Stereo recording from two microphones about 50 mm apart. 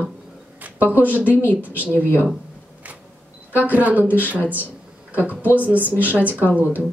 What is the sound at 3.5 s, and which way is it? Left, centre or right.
A woman's voice, right.